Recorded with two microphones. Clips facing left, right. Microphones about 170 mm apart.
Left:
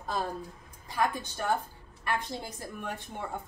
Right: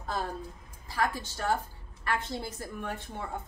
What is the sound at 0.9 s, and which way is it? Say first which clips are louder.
Speech: left 1 dB; 15° left (ahead or behind).